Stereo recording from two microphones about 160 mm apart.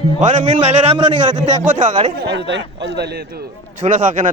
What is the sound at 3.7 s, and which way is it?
Speech, 50° right (ahead or behind).